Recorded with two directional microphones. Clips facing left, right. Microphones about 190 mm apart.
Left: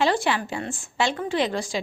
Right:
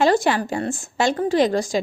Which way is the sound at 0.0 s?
45° right (ahead or behind).